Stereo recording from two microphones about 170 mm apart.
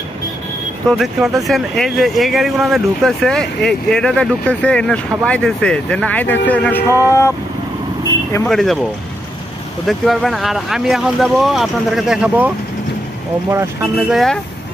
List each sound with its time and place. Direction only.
0.8 s speech: centre (ahead or behind); by 7.3 s 15° left (ahead or behind)
8.5 s speech: centre (ahead or behind)
9.8 s speech: centre (ahead or behind)
13.9 s speech: centre (ahead or behind)